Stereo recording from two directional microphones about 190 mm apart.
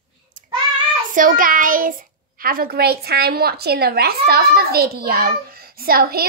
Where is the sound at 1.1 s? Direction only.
45° right (ahead or behind).